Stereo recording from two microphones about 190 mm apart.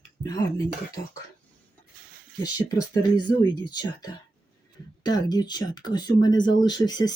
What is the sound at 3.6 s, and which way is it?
Speech, 20° left (ahead or behind).